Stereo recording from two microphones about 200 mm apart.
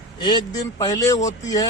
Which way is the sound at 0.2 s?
20° left (ahead or behind).